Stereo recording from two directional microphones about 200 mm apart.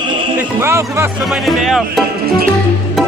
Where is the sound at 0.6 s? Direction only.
10° right (ahead or behind).